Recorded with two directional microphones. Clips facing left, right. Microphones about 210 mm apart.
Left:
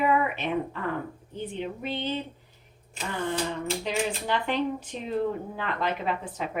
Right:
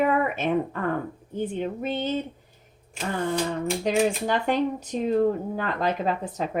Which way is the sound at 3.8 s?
45° right (ahead or behind).